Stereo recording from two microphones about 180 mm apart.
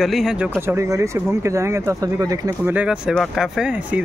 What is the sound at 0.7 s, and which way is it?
Speech, 15° right (ahead or behind).